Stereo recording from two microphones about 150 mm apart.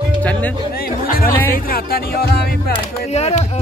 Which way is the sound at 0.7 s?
85° left.